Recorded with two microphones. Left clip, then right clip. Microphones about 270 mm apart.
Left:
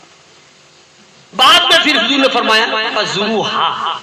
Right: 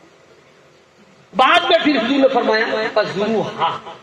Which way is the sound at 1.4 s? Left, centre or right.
Left.